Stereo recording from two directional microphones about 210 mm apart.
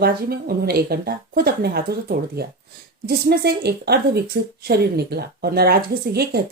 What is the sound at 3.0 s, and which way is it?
Speech, 45° right (ahead or behind).